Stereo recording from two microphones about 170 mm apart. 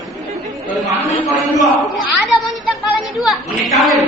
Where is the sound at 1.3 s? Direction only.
Centre (ahead or behind).